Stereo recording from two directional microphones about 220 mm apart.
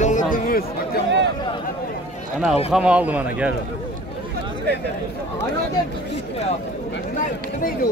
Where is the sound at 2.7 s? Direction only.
5° right (ahead or behind).